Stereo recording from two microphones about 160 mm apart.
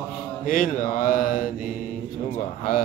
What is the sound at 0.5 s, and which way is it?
Mantra, 60° left (ahead or behind).